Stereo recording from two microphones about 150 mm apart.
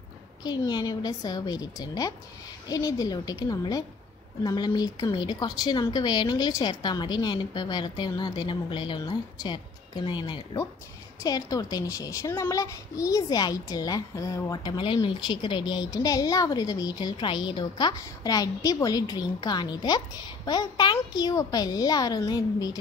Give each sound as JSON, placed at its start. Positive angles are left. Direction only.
{"t": 0.4, "sound": "a child's voice", "side_deg": 30}